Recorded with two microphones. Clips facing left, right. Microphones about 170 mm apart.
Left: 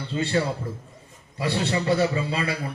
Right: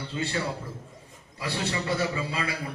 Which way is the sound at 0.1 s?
30° left (ahead or behind).